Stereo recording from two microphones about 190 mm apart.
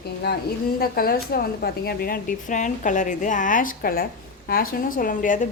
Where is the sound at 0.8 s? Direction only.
50° left (ahead or behind).